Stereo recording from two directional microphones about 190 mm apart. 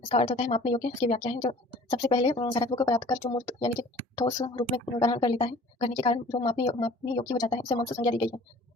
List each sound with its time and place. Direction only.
0.1 s speech: 25° left (ahead or behind)